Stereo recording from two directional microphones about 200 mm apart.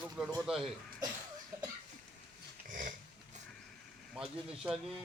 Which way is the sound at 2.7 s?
40° right (ahead or behind).